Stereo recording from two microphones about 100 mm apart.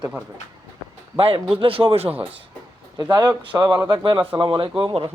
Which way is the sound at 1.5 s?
65° right (ahead or behind).